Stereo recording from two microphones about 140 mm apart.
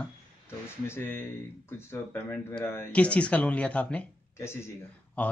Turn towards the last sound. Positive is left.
turn(degrees=15)  # may be behind; listen again after turning